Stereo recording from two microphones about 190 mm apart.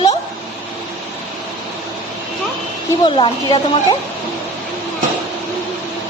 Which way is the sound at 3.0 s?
25° left (ahead or behind).